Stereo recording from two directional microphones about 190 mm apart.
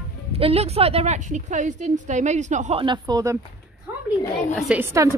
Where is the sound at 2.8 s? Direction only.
20° right (ahead or behind).